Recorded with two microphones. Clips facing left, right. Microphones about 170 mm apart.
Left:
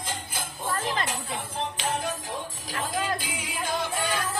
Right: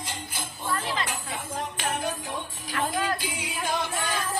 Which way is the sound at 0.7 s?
40° left (ahead or behind).